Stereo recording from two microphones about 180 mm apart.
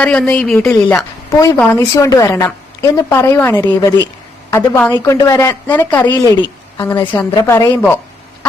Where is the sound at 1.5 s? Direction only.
15° left (ahead or behind).